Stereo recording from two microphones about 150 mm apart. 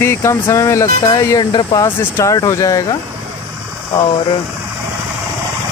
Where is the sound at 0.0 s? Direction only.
15° left (ahead or behind).